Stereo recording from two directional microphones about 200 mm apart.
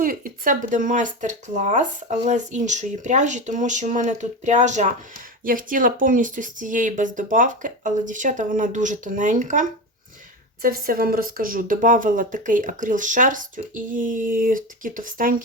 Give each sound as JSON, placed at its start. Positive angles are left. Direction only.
{"t": 0.0, "sound": "speech", "side_deg": -45}